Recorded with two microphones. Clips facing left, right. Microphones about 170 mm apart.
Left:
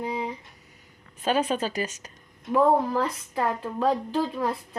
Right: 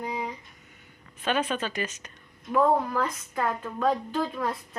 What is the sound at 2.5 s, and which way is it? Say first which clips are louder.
A woman's voice: left 2 dB; 25° left (ahead or behind).